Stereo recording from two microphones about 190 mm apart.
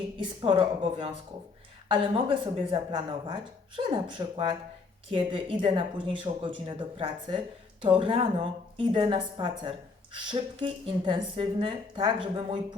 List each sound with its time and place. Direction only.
0.2 s speech: 25° right (ahead or behind)
5.1 s speech: 25° right (ahead or behind)